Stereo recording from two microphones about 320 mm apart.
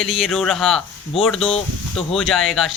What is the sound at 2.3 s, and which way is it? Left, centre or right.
Speech, centre.